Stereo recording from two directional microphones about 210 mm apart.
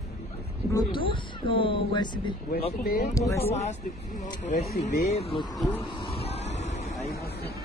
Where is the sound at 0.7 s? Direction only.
25° left (ahead or behind).